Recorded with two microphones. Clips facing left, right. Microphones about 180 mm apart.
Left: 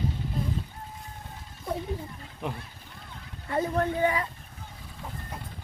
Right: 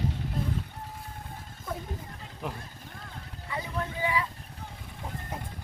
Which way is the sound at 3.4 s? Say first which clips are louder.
Left 8 dB; 50° left (ahead or behind).